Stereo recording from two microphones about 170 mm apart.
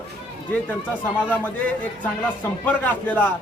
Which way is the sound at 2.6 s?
10° left (ahead or behind).